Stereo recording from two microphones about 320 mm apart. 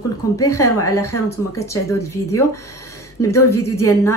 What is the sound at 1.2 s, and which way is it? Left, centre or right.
Speech, centre.